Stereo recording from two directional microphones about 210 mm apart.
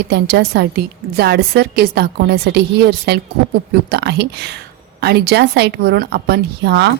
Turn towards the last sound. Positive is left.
turn(degrees=-55)  # may be behind; listen again after turning